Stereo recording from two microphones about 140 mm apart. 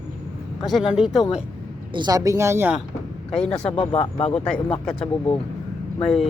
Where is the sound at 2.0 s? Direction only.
25° right (ahead or behind).